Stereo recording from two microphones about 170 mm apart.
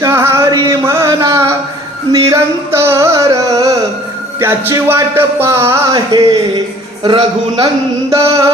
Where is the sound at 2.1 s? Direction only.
15° right (ahead or behind).